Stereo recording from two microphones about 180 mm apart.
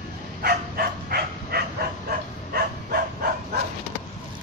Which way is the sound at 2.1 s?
55° right (ahead or behind).